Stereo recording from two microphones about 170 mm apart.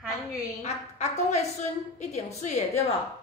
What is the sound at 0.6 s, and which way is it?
A woman's voice, 40° left (ahead or behind).